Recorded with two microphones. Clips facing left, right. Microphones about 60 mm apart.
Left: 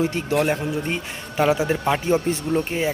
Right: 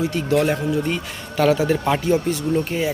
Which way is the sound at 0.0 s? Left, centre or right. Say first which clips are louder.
Right 2 dB; left.